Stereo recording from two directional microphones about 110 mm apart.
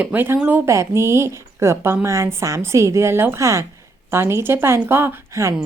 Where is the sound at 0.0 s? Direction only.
15° right (ahead or behind).